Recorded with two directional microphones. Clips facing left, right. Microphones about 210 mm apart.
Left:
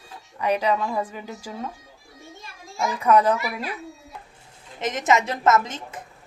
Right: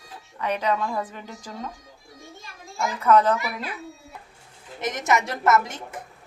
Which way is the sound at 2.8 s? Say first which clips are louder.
Even; 10° left (ahead or behind).